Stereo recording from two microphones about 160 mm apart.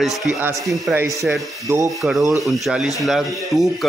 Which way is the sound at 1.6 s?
20° right (ahead or behind).